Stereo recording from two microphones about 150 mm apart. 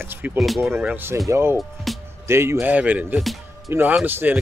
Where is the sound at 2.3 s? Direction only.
15° right (ahead or behind).